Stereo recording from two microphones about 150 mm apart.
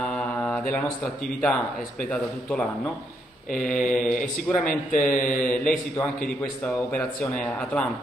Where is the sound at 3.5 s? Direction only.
60° left (ahead or behind).